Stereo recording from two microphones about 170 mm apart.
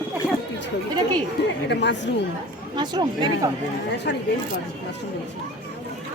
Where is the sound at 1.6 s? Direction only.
90° left.